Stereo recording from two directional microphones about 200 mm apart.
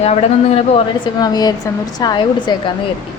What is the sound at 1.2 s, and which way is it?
Speech, 20° left (ahead or behind).